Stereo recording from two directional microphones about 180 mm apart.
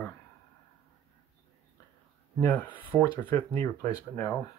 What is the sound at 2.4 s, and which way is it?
Speech, 10° left (ahead or behind).